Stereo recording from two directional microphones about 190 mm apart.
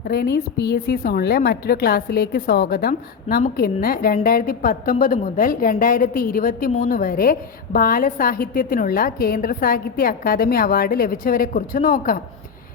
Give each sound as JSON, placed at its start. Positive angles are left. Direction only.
{"t": 0.0, "sound": "a woman's voice", "side_deg": 55}